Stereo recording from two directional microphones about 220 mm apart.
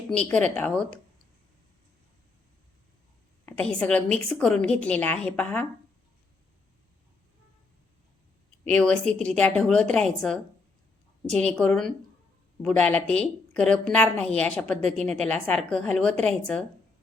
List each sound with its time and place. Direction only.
0.1 s a woman's voice: 5° left (ahead or behind)
3.4 s a woman's voice: 5° left (ahead or behind)
8.6 s a woman's voice: 5° left (ahead or behind)